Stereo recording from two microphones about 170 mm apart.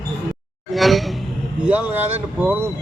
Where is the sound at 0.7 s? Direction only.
Centre (ahead or behind).